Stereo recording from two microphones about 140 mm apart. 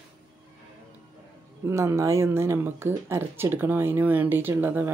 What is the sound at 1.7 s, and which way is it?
Speech, 20° right (ahead or behind).